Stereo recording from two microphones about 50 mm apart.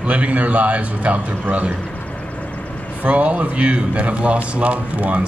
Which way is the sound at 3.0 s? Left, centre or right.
Right.